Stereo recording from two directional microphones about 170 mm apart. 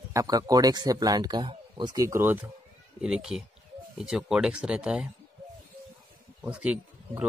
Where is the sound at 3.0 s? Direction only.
5° right (ahead or behind).